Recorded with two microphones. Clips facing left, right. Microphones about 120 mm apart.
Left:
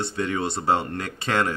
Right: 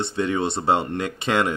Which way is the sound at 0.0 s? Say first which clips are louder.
Right 3 dB; 20° right (ahead or behind).